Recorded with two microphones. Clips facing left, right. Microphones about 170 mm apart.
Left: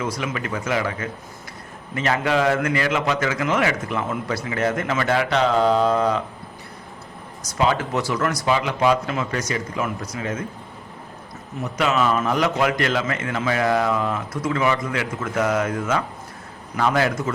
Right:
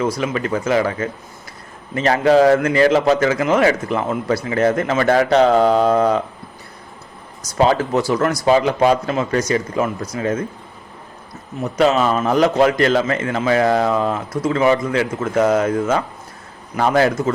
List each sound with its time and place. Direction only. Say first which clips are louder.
0.0 s a man's voice: right 6 dB; 35° right (ahead or behind)
7.6 s a man's voice: right 5 dB; 35° right (ahead or behind)
11.8 s a man's voice: right 5 dB; 35° right (ahead or behind)